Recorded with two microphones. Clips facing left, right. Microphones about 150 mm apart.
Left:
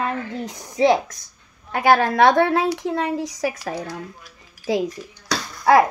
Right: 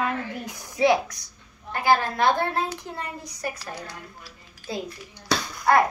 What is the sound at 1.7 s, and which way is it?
A woman's voice, 75° left (ahead or behind).